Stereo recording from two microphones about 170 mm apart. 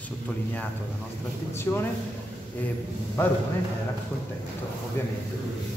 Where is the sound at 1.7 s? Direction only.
15° left (ahead or behind).